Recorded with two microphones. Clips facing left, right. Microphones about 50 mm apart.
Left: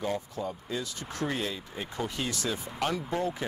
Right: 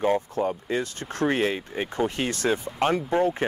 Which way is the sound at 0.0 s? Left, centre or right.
Right.